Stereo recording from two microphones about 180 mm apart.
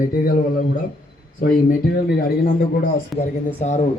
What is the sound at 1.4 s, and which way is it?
A man's voice, 55° left (ahead or behind).